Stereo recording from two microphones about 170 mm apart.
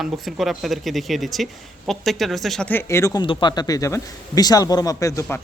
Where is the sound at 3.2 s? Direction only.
30° left (ahead or behind).